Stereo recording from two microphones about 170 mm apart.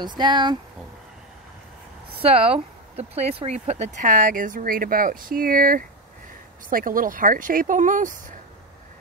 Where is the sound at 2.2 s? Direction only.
35° right (ahead or behind).